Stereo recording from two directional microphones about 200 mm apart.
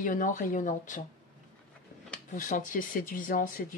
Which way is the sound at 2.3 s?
40° left (ahead or behind).